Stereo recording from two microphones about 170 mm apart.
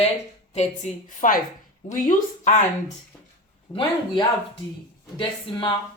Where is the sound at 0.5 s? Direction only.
45° left (ahead or behind).